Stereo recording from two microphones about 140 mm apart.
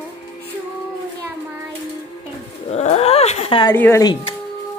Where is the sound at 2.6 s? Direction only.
50° left (ahead or behind).